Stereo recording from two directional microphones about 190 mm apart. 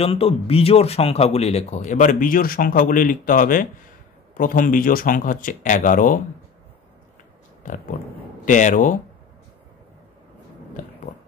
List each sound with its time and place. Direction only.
0.0 s speech: 30° left (ahead or behind); by 6.2 s 45° left (ahead or behind)
8.5 s speech: 40° left (ahead or behind)
11.1 s a sound: 45° left (ahead or behind)